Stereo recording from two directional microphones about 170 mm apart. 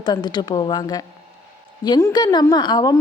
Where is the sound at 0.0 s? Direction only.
25° left (ahead or behind).